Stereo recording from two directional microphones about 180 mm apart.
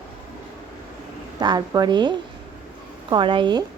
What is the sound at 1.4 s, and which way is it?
A woman's voice, 20° right (ahead or behind).